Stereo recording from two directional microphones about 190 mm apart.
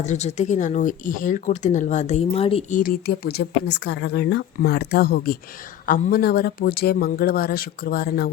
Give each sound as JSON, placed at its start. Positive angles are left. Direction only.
{"t": 0.0, "sound": "speech", "side_deg": 35}
{"t": 2.7, "sound": "speech", "side_deg": 50}